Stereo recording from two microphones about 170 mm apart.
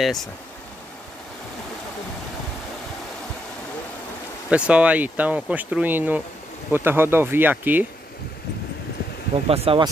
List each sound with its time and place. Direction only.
0.0 s speech: centre (ahead or behind)
4.5 s speech: 5° right (ahead or behind)
9.5 s speech: 35° right (ahead or behind)